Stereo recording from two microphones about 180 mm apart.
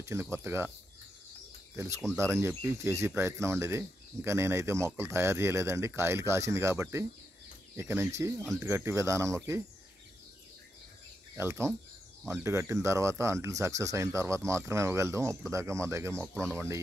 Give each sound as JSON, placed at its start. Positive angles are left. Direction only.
{"t": 0.0, "sound": "speech", "side_deg": -15}
{"t": 2.1, "sound": "speech", "side_deg": -15}
{"t": 11.3, "sound": "speech", "side_deg": -15}